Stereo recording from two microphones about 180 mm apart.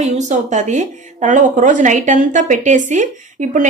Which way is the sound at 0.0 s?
40° right (ahead or behind).